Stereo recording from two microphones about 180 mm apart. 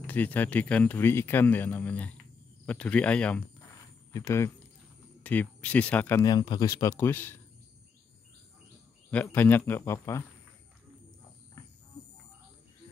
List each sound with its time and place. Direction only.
0.0 s speech: 10° left (ahead or behind)
6.2 s speech: 25° left (ahead or behind)
6.8 s speech: 15° left (ahead or behind)
9.1 s speech: 10° left (ahead or behind)